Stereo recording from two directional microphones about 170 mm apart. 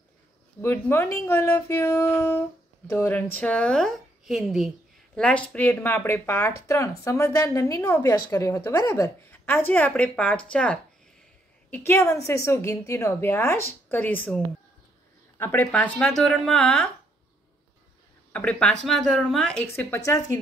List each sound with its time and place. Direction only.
0.6 s a woman's voice: 15° left (ahead or behind)
18.3 s a woman's voice: 5° left (ahead or behind)